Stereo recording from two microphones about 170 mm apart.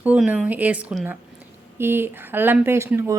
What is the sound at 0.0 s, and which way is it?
A woman's voice, 10° right (ahead or behind).